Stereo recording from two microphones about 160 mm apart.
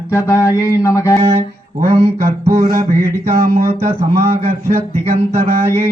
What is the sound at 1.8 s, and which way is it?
Music, 15° right (ahead or behind).